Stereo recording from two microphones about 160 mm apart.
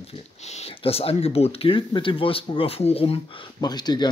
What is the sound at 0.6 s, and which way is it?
Speech, 40° left (ahead or behind).